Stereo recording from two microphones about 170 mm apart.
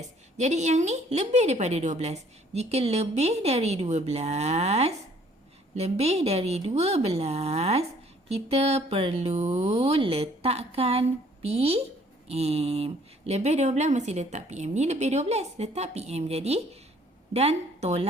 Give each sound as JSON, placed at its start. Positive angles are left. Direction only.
{"t": 0.3, "sound": "a woman's voice", "side_deg": -40}